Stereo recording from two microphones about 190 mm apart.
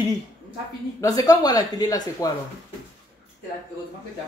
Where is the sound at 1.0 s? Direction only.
20° left (ahead or behind).